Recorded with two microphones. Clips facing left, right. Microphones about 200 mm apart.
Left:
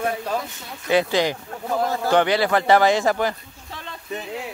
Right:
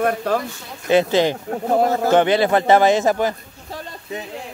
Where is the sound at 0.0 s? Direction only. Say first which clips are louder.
Right 5 dB; 60° right (ahead or behind).